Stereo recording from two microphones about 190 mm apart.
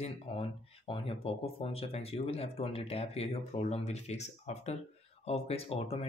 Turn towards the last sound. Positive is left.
turn(degrees=30)  # may be behind; listen again after turning